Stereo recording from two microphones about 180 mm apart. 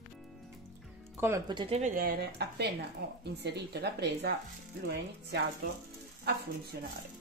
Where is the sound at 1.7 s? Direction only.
35° right (ahead or behind).